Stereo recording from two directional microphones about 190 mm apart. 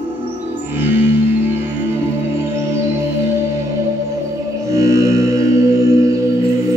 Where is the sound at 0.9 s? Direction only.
10° right (ahead or behind).